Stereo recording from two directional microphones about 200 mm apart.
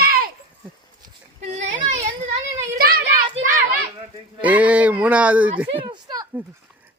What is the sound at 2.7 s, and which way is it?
Children playing, 45° right (ahead or behind).